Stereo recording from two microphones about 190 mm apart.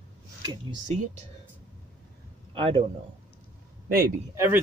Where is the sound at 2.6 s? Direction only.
25° right (ahead or behind).